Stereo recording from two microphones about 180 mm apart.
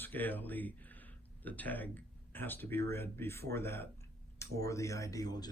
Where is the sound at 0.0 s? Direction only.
10° left (ahead or behind).